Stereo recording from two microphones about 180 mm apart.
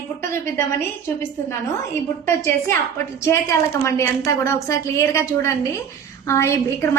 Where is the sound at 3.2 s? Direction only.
15° left (ahead or behind).